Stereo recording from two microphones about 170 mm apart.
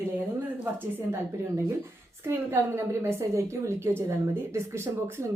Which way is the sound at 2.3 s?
15° right (ahead or behind).